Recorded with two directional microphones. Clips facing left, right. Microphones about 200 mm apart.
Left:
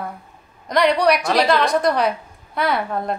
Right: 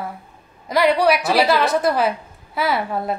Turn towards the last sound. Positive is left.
turn(degrees=-5)  # may be behind; listen again after turning